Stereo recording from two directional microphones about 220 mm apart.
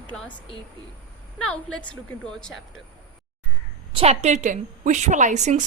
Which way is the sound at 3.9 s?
30° right (ahead or behind).